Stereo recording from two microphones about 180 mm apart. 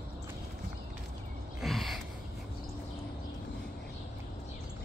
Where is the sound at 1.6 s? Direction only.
Centre (ahead or behind).